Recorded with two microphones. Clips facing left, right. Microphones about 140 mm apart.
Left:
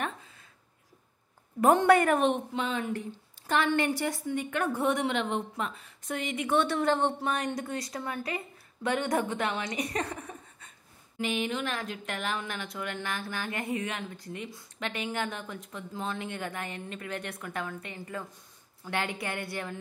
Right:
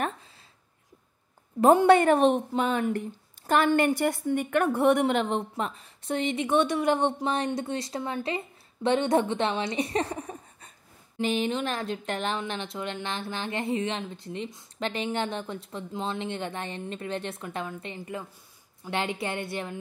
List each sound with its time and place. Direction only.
1.9 s a woman's voice: 30° right (ahead or behind)